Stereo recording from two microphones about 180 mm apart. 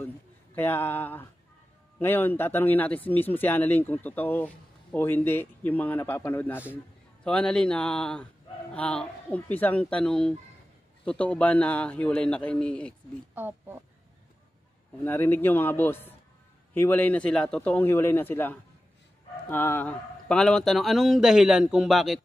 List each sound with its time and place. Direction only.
0.6 s a man's voice: 10° left (ahead or behind)
13.3 s speech: 10° right (ahead or behind)
15.0 s a man's voice: 10° left (ahead or behind)